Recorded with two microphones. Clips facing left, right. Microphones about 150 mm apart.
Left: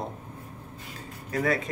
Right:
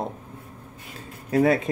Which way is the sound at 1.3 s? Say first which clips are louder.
Right 7 dB; 25° right (ahead or behind).